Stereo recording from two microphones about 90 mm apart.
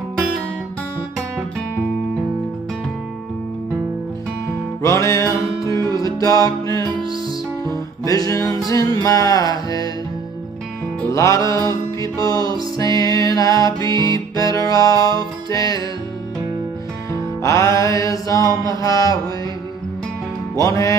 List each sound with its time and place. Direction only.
4.8 s music: 35° left (ahead or behind)
11.1 s music: 35° left (ahead or behind)
17.1 s music: 35° left (ahead or behind)
20.5 s music: 35° left (ahead or behind)